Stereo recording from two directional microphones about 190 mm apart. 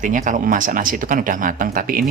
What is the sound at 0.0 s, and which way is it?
Speech, 40° right (ahead or behind).